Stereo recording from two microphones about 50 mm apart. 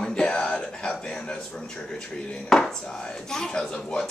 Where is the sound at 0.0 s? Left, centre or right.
Centre.